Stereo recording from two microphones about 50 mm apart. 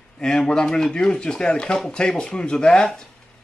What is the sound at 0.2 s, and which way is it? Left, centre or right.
Speech, centre.